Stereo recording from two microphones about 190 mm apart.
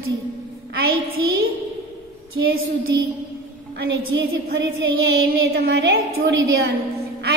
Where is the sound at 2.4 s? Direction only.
70° right (ahead or behind).